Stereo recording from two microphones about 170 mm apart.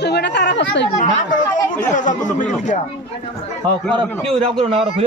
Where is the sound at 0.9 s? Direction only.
50° left (ahead or behind).